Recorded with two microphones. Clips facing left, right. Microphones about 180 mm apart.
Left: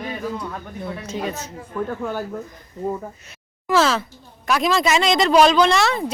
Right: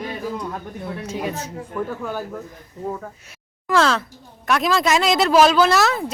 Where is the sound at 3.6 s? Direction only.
5° left (ahead or behind).